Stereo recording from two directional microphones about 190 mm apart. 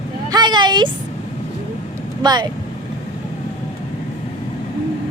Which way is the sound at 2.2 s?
20° right (ahead or behind).